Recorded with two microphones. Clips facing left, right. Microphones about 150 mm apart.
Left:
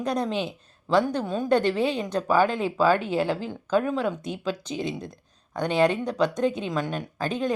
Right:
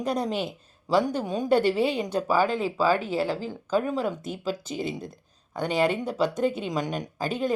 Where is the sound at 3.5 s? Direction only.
5° right (ahead or behind).